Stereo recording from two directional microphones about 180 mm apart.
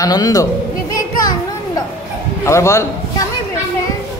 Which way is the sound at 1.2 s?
20° left (ahead or behind).